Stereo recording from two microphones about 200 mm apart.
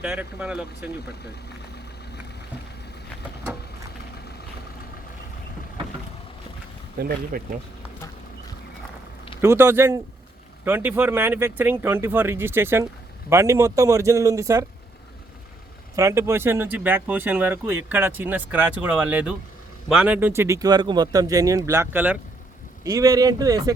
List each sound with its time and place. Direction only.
0.0 s speech: 10° right (ahead or behind)
7.0 s speech: 45° right (ahead or behind)
9.4 s speech: 15° right (ahead or behind)
16.0 s speech: 15° right (ahead or behind)